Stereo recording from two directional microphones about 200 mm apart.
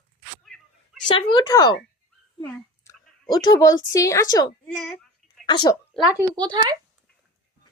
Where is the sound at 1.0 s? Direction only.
25° left (ahead or behind).